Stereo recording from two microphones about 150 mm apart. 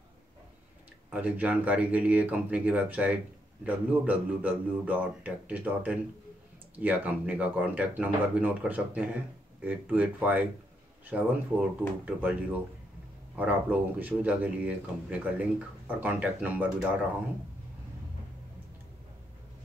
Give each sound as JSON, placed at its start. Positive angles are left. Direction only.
{"t": 1.1, "sound": "speech", "side_deg": -10}
{"t": 13.4, "sound": "speech", "side_deg": -10}